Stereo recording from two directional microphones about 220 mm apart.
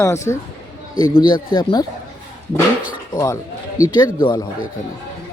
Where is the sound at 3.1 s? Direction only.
15° left (ahead or behind).